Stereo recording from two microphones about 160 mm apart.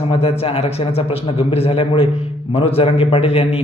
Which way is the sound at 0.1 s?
40° left (ahead or behind).